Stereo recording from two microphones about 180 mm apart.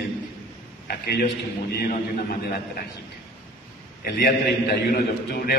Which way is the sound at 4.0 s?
55° left (ahead or behind).